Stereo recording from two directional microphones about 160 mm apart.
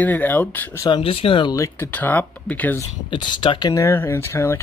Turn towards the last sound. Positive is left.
turn(degrees=15)  # may be behind; listen again after turning